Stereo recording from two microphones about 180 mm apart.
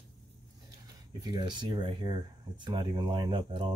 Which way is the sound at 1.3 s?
25° right (ahead or behind).